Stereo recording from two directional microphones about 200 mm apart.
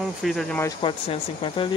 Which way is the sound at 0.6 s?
25° left (ahead or behind).